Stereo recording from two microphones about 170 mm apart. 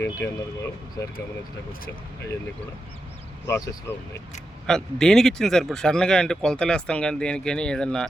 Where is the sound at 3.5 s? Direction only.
15° left (ahead or behind).